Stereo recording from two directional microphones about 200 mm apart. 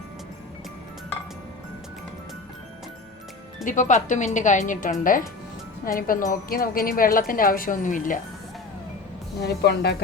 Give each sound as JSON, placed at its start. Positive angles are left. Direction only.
{"t": 3.6, "sound": "speech", "side_deg": 40}
{"t": 9.4, "sound": "a woman's voice", "side_deg": 55}